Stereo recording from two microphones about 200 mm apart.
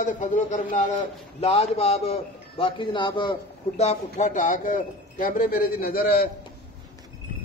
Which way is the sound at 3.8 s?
35° left (ahead or behind).